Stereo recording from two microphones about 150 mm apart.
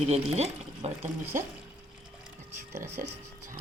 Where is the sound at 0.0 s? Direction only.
45° right (ahead or behind).